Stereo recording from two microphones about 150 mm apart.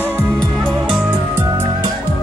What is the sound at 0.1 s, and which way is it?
Music, 10° right (ahead or behind).